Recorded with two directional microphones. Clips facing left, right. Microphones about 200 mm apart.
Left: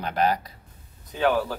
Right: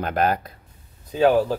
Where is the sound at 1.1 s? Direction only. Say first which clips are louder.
Right 6 dB; 35° right (ahead or behind).